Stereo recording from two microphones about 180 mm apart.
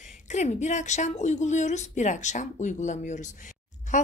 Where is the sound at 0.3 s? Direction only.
40° left (ahead or behind).